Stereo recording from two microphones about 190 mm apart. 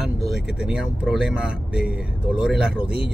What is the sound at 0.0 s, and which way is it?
Speech, 5° right (ahead or behind).